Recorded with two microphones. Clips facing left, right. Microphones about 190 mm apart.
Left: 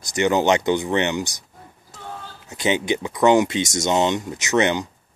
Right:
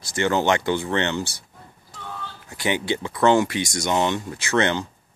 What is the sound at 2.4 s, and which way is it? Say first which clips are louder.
Speech: left 3 dB; 20° left (ahead or behind).